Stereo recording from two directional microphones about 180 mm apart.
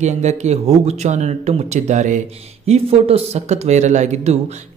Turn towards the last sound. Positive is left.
turn(degrees=-40)  # may be behind; listen again after turning